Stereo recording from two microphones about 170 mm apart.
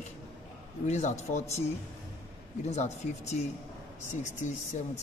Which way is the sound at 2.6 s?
40° left (ahead or behind).